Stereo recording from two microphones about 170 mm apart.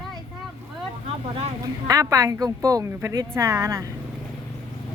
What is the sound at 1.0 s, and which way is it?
Vehicle, 35° right (ahead or behind).